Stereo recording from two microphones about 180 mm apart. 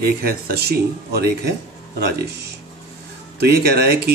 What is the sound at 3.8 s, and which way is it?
Speech, 60° right (ahead or behind).